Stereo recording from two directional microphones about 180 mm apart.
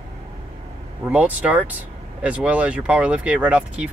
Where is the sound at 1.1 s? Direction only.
10° right (ahead or behind).